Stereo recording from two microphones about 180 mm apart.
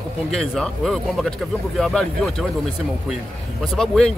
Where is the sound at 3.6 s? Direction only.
5° left (ahead or behind).